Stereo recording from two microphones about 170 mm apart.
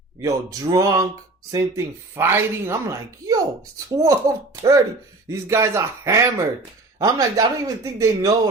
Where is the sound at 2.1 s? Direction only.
15° right (ahead or behind).